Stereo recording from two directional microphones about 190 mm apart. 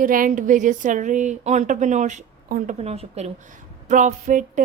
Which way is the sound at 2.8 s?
35° right (ahead or behind).